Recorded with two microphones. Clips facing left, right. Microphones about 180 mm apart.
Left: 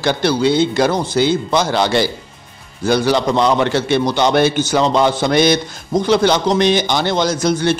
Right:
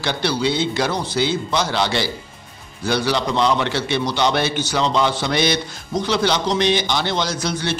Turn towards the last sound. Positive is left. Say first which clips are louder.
# left 8 dB
turn(degrees=45)  # may be behind; listen again after turning